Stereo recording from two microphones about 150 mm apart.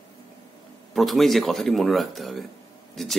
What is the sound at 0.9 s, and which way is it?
Speech, centre (ahead or behind).